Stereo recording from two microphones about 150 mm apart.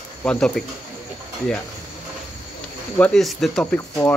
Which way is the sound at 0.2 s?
5° left (ahead or behind).